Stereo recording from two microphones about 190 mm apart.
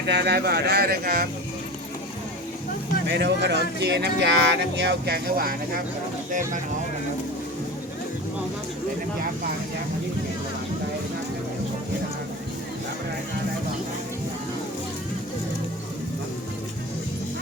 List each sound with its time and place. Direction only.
0.0 s speech: 65° right (ahead or behind)
3.1 s speech: 65° right (ahead or behind)